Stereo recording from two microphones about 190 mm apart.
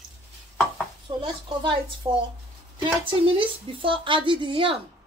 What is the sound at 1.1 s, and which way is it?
A woman's voice, 25° right (ahead or behind).